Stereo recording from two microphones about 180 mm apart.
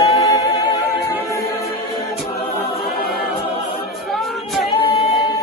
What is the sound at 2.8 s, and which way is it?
A capella, 55° left (ahead or behind).